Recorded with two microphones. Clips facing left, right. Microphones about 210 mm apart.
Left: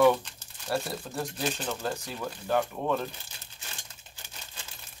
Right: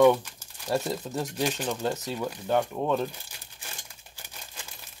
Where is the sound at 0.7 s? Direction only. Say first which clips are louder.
Right 3 dB; 15° right (ahead or behind).